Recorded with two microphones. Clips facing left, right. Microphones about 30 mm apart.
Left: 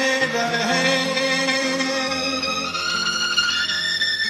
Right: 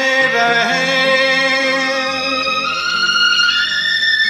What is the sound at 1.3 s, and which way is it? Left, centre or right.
Music, right.